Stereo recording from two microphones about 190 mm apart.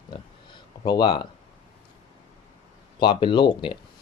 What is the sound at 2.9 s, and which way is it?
Speech, 25° left (ahead or behind).